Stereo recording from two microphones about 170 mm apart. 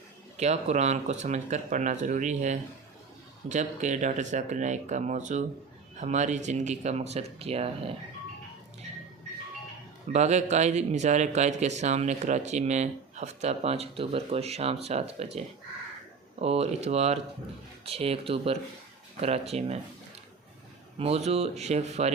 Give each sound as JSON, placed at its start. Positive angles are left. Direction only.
{"t": 0.3, "sound": "speech", "side_deg": -40}
{"t": 10.1, "sound": "speech", "side_deg": -40}
{"t": 16.4, "sound": "speech", "side_deg": -35}
{"t": 21.0, "sound": "speech", "side_deg": -40}